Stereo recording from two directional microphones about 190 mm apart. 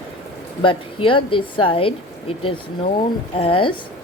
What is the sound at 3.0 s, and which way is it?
Speech, 30° left (ahead or behind).